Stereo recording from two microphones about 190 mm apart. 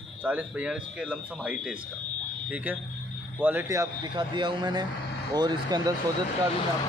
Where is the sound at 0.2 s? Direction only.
5° right (ahead or behind).